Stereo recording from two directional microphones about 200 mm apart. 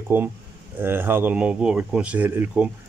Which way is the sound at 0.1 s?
10° right (ahead or behind).